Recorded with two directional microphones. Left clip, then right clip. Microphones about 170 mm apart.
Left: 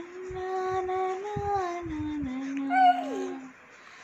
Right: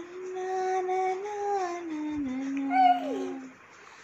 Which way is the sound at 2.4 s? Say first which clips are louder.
Left 1 dB; 5° right (ahead or behind).